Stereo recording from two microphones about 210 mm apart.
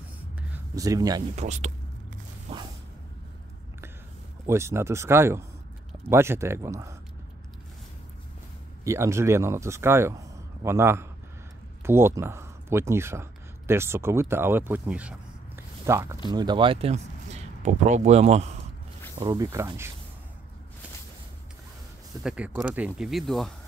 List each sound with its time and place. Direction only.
0.4 s a sound: 10° right (ahead or behind)
1.3 s speech: 35° right (ahead or behind)
2.5 s a sound: 30° right (ahead or behind)
4.5 s a man's voice: 10° right (ahead or behind)
8.8 s a man's voice: 15° right (ahead or behind); by 18.6 s 30° right (ahead or behind)
19.1 s a man's voice: 20° right (ahead or behind)
22.2 s speech: 5° right (ahead or behind)